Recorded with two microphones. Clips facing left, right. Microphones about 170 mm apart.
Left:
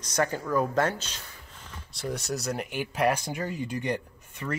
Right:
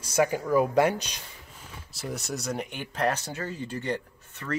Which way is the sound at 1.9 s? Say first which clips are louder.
Left 2 dB; centre (ahead or behind).